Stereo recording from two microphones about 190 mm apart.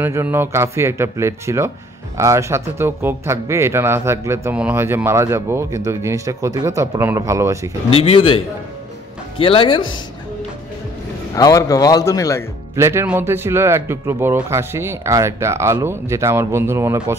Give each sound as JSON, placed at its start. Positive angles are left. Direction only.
{"t": 0.0, "sound": "speech", "side_deg": -10}
{"t": 7.9, "sound": "speech", "side_deg": 30}
{"t": 9.4, "sound": "speech", "side_deg": 30}
{"t": 11.3, "sound": "a man's voice", "side_deg": 20}
{"t": 12.7, "sound": "speech", "side_deg": -15}